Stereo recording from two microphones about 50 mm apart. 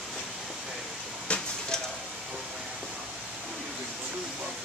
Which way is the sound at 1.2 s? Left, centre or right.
Left.